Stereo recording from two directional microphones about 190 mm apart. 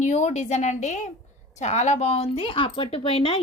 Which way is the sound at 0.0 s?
40° left (ahead or behind).